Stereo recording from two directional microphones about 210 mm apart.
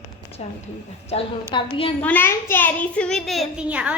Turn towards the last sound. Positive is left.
turn(degrees=-5)  # may be behind; listen again after turning